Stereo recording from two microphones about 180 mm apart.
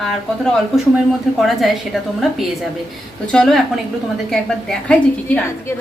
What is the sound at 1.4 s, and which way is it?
Speech, centre (ahead or behind).